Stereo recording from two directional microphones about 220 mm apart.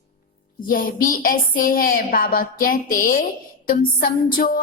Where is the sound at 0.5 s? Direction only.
40° left (ahead or behind).